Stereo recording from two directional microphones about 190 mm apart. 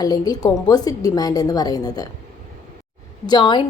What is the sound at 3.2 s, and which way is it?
Speech, 25° left (ahead or behind).